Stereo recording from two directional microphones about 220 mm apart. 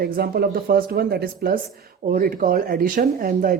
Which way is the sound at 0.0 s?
45° right (ahead or behind).